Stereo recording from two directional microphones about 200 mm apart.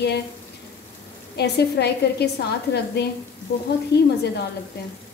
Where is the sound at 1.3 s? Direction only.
55° left (ahead or behind).